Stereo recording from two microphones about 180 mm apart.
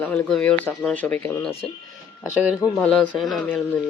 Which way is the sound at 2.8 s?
5° left (ahead or behind).